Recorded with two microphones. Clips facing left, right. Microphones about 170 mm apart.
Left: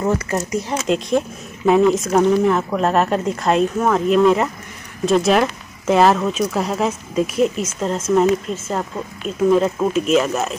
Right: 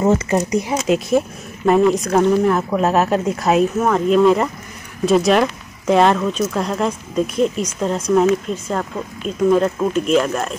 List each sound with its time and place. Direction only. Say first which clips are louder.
0.0 s speech: right 4 dB; 25° right (ahead or behind)
0.8 s speech: even; 5° right (ahead or behind)